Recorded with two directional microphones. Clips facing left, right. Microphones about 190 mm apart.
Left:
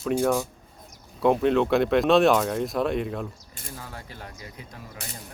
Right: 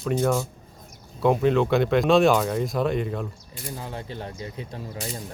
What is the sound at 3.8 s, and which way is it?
Speech, 25° right (ahead or behind).